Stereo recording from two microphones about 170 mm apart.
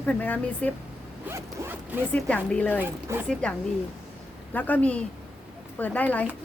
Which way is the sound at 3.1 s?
15° right (ahead or behind).